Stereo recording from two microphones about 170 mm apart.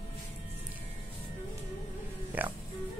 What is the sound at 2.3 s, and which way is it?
Speech, 10° right (ahead or behind).